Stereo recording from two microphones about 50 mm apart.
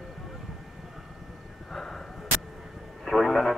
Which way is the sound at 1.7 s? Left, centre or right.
Centre.